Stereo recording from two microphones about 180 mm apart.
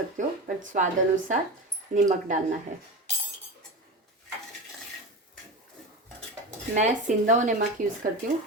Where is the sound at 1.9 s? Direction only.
45° right (ahead or behind).